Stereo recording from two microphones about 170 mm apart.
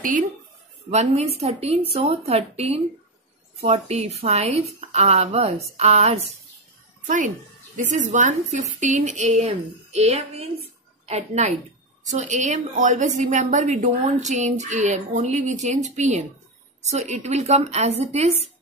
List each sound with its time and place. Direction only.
0.8 s a woman's voice: 35° right (ahead or behind)